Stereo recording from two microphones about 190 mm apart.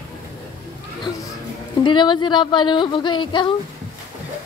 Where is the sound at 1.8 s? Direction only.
25° left (ahead or behind).